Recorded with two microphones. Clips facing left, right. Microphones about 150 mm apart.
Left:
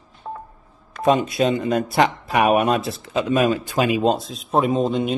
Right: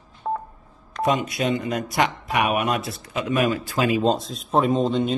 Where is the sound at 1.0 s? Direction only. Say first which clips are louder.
Left 5 dB; 30° left (ahead or behind).